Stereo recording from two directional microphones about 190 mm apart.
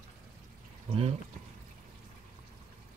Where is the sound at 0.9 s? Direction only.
30° right (ahead or behind).